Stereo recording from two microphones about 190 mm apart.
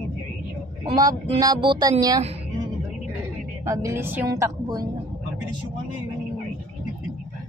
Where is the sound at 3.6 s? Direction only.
15° right (ahead or behind).